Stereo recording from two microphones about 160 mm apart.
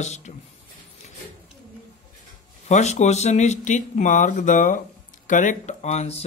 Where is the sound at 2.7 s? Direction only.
45° left (ahead or behind).